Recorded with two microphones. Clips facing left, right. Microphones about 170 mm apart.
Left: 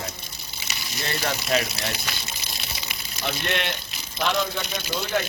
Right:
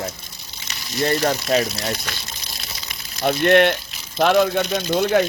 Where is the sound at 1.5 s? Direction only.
40° right (ahead or behind).